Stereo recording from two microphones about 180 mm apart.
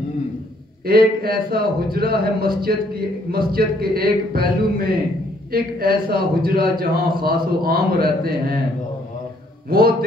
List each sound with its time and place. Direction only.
0.8 s a man's voice: 55° right (ahead or behind)